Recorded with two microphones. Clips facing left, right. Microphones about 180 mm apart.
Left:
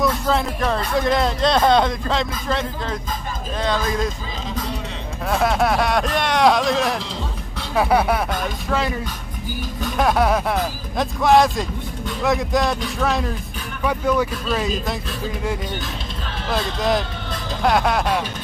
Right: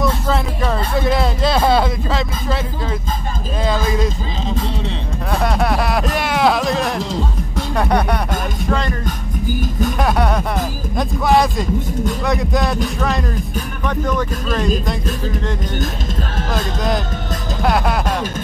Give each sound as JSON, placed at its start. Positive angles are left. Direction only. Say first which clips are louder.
{"t": 0.0, "sound": "speech", "louder": "right 1 dB", "side_deg": 0}
{"t": 5.3, "sound": "speech", "louder": "even", "side_deg": 0}
{"t": 9.6, "sound": "speech", "louder": "right 5 dB", "side_deg": -45}
{"t": 9.9, "sound": "speech", "louder": "left 3 dB", "side_deg": 0}
{"t": 17.6, "sound": "speech", "louder": "even", "side_deg": 0}